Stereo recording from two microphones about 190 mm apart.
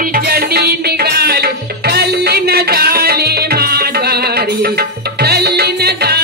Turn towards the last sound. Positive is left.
turn(degrees=-55)  # may be behind; listen again after turning